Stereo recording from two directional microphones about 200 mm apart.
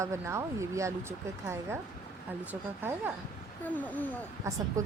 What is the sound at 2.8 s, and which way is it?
Speech, 10° right (ahead or behind).